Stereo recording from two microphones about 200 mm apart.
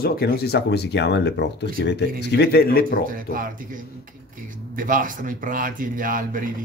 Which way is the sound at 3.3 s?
45° right (ahead or behind).